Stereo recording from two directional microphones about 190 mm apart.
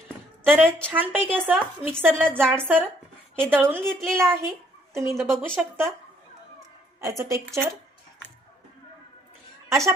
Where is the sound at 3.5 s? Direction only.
10° right (ahead or behind).